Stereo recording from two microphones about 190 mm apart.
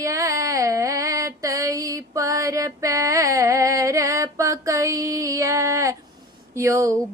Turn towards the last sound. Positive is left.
turn(degrees=-15)  # may be behind; listen again after turning